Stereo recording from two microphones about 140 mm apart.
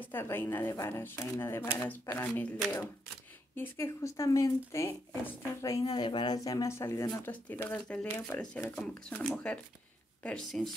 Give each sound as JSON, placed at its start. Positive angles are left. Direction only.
{"t": 0.0, "sound": "speech", "side_deg": 15}